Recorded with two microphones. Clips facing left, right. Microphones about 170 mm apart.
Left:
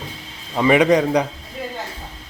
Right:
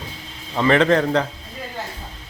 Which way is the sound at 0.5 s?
10° left (ahead or behind).